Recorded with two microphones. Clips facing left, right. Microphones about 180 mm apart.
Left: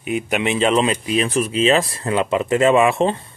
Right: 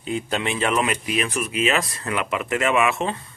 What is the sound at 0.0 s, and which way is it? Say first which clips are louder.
Speech: left 4 dB; 15° left (ahead or behind).